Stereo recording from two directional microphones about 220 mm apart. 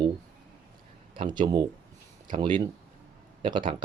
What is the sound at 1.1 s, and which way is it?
Speech, 20° right (ahead or behind).